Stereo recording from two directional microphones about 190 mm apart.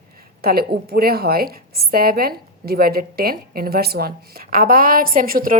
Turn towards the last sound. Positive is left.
turn(degrees=-50)  # may be behind; listen again after turning